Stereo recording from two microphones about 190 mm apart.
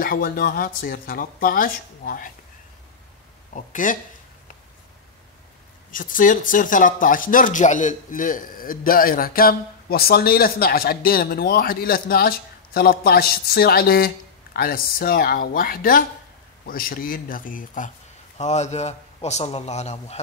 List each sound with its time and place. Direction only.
0.0 s speech: 50° left (ahead or behind)
3.5 s speech: 45° left (ahead or behind)
5.9 s a man's voice: 45° left (ahead or behind)